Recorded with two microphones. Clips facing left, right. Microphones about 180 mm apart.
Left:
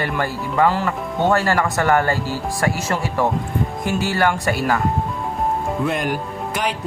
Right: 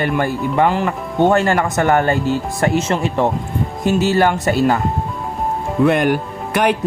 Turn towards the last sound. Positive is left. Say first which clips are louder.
# right 7 dB
turn(degrees=-65)  # may be behind; listen again after turning